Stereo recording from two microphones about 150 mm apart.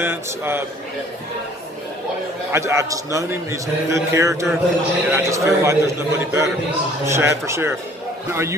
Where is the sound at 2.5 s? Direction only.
20° right (ahead or behind).